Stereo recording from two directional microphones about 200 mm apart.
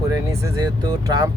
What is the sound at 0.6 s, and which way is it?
Speech, 20° right (ahead or behind).